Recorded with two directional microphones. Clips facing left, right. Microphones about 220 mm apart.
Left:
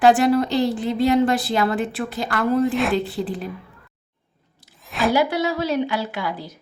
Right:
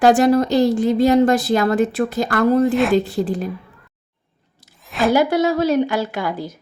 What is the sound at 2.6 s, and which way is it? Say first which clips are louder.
Speech: right 4 dB; centre (ahead or behind).